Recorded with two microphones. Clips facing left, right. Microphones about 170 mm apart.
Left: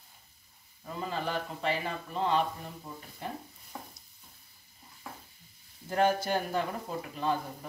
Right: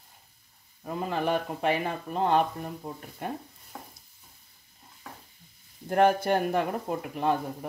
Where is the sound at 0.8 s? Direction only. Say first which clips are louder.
Right 6 dB; 60° right (ahead or behind).